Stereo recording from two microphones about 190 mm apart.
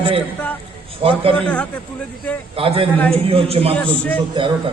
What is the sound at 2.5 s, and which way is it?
A man's voice, 30° right (ahead or behind).